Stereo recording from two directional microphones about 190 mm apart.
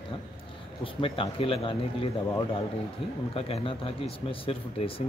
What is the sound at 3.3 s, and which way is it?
Speech, 30° left (ahead or behind).